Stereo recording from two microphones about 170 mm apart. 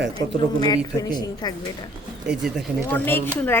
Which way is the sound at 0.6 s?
25° left (ahead or behind).